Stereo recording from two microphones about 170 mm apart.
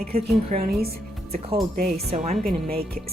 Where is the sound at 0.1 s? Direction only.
40° right (ahead or behind).